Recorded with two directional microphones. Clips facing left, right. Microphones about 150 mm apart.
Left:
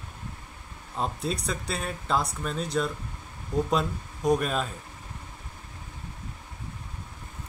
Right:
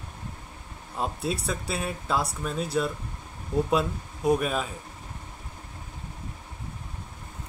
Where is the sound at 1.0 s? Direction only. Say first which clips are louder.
Right 1 dB; 5° right (ahead or behind).